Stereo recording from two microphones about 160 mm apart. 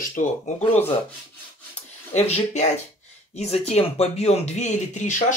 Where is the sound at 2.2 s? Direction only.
45° left (ahead or behind).